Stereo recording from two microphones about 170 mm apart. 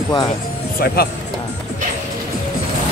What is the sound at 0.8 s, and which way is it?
Speech, 65° left (ahead or behind).